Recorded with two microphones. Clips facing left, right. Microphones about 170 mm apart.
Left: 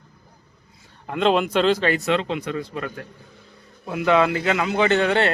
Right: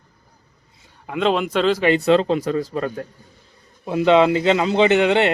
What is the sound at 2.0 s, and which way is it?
Speech, 35° right (ahead or behind).